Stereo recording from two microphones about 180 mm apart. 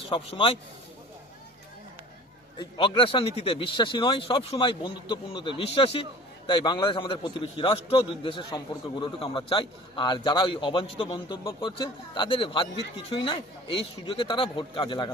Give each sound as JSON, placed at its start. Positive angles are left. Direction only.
{"t": 0.1, "sound": "a man's voice", "side_deg": 30}
{"t": 2.6, "sound": "a man's voice", "side_deg": 25}